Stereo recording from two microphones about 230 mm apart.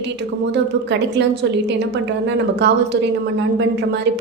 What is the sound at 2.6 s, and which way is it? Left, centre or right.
Speech, right.